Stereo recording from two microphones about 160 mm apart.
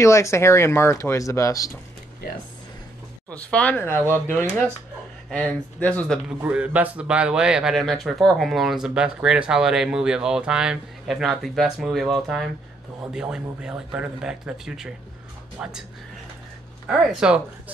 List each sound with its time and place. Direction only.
0.0 s speech: 15° left (ahead or behind)
3.3 s speech: 10° left (ahead or behind)
6.2 s speech: 5° right (ahead or behind)
16.8 s speech: centre (ahead or behind)